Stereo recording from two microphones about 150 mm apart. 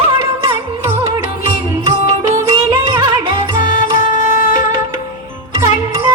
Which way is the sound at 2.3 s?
20° right (ahead or behind).